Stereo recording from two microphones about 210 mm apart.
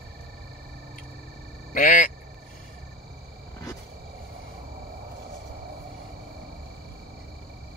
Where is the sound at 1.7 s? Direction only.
40° left (ahead or behind).